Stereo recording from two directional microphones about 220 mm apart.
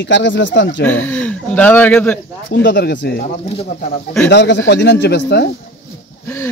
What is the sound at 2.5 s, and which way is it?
Speech, 50° left (ahead or behind).